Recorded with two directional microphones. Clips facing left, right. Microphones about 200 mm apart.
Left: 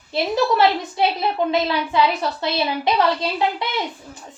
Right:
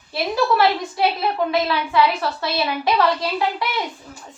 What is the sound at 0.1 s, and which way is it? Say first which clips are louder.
A woman's voice: left 1 dB; 20° left (ahead or behind).